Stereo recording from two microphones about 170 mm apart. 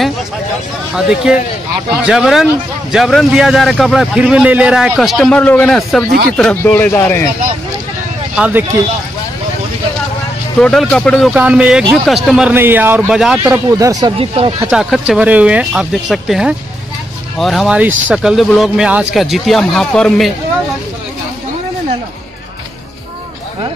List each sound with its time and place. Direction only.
0.9 s a man's voice: 5° right (ahead or behind); by 7.2 s 15° left (ahead or behind)
8.4 s a man's voice: 10° right (ahead or behind)
10.6 s a man's voice: 5° left (ahead or behind)
11.3 s a man's voice: 5° right (ahead or behind)
14.1 s speech: 35° right (ahead or behind)
14.7 s a man's voice: 5° right (ahead or behind)